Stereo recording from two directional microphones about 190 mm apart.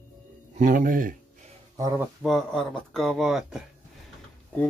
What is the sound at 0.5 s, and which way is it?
Speech, 45° right (ahead or behind).